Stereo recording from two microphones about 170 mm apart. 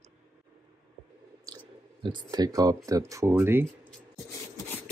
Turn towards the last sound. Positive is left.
turn(degrees=-15)  # may be behind; listen again after turning